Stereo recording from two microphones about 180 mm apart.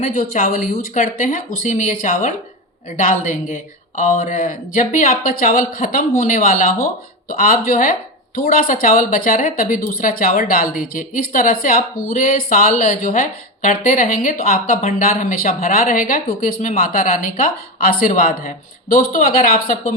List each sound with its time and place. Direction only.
0.0 s speech: 45° left (ahead or behind)